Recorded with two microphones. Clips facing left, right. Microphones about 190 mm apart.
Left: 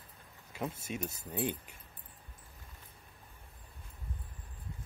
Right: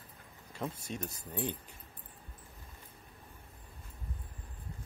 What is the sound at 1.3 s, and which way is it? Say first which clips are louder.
Speech: left 2 dB; 15° left (ahead or behind).